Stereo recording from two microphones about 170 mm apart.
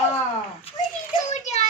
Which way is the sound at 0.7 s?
35° left (ahead or behind).